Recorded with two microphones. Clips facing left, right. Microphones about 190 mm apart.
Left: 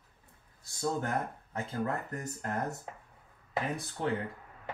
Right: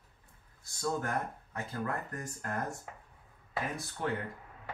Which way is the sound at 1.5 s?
20° left (ahead or behind).